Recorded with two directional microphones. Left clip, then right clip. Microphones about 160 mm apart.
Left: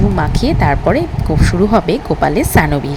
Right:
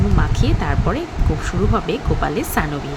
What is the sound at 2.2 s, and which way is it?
Speech, 35° left (ahead or behind).